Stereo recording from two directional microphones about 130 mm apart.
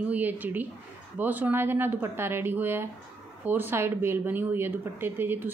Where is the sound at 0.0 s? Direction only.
10° right (ahead or behind).